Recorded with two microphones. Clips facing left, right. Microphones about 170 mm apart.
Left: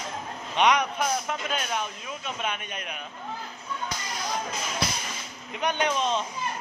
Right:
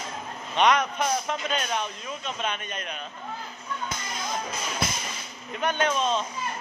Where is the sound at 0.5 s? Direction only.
10° left (ahead or behind).